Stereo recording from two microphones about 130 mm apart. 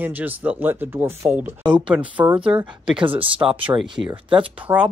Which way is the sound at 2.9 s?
40° right (ahead or behind).